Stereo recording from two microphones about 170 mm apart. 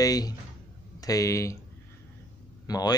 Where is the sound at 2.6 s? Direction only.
20° left (ahead or behind).